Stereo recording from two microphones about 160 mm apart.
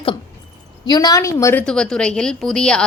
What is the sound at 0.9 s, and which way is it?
Speech, 25° left (ahead or behind).